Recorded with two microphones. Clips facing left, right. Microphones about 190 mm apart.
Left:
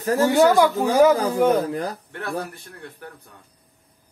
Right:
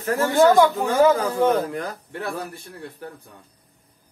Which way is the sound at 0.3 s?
10° left (ahead or behind).